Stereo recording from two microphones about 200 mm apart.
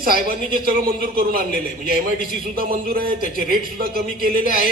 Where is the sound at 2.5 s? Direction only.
45° right (ahead or behind).